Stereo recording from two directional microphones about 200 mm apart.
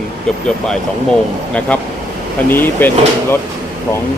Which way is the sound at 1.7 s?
5° left (ahead or behind).